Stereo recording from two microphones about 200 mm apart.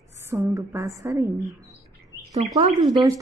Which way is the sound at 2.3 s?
30° right (ahead or behind).